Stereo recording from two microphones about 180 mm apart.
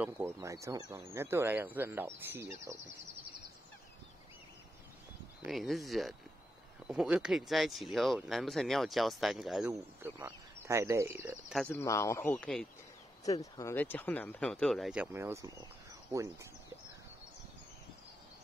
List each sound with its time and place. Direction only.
0.0 s speech: 15° right (ahead or behind)
5.4 s speech: centre (ahead or behind)
11.5 s speech: 5° left (ahead or behind)
13.2 s speech: 20° left (ahead or behind); by 16.4 s 15° right (ahead or behind)